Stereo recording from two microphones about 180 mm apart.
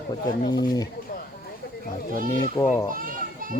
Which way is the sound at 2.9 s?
50° right (ahead or behind).